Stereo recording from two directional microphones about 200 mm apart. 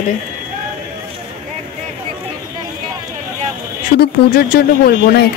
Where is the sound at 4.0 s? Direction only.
50° left (ahead or behind).